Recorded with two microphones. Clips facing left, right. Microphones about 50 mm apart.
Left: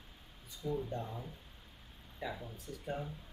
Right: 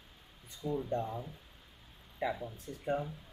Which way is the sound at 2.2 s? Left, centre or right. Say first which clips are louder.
Right 6 dB; right.